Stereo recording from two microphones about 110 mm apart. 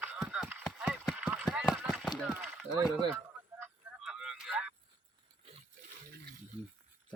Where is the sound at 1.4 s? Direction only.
Centre (ahead or behind).